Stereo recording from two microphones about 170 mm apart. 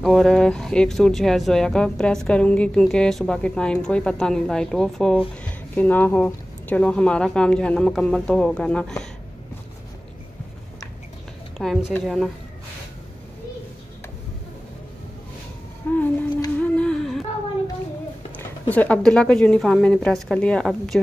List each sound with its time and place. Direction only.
0.0 s speech: centre (ahead or behind)
11.5 s speech: centre (ahead or behind)
15.8 s a sound: 10° left (ahead or behind)
16.6 s humming: 5° left (ahead or behind)
18.7 s speech: 10° left (ahead or behind)